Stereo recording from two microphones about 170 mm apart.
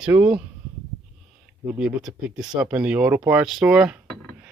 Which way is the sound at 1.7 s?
5° right (ahead or behind).